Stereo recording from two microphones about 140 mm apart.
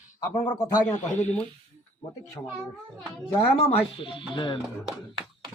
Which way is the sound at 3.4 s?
45° left (ahead or behind).